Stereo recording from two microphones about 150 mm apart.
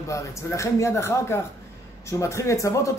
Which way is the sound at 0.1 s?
20° left (ahead or behind).